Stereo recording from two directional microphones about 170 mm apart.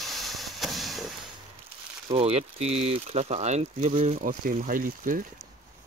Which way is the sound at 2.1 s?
35° right (ahead or behind).